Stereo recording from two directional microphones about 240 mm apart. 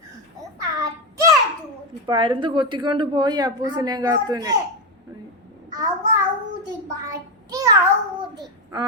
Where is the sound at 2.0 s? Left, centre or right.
Right.